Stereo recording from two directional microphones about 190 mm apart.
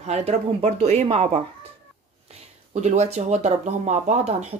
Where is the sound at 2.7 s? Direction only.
35° right (ahead or behind).